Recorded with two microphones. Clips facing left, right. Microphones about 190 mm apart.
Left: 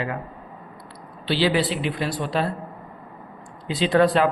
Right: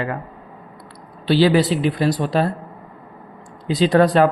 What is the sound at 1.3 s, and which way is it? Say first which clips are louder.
Speech: right 6 dB; 45° right (ahead or behind).